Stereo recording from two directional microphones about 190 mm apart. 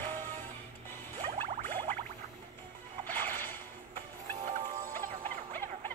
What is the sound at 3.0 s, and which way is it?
Whip, 10° left (ahead or behind).